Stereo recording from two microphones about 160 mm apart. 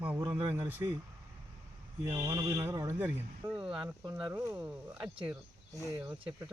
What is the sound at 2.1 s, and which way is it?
Mantra, 20° right (ahead or behind).